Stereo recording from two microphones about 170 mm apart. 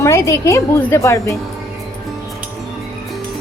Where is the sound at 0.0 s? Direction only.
15° left (ahead or behind).